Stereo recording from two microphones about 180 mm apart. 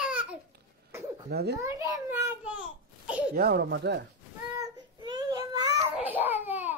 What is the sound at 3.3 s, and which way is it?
Speech, 60° right (ahead or behind).